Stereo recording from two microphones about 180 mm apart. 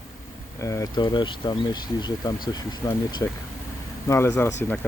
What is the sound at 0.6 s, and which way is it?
Speech, 15° left (ahead or behind).